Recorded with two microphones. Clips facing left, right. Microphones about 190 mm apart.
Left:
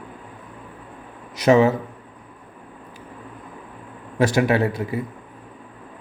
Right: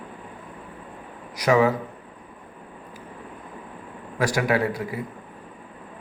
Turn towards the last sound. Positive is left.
turn(degrees=25)  # may be behind; listen again after turning